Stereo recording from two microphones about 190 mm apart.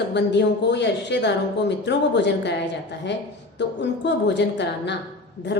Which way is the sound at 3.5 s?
65° left (ahead or behind).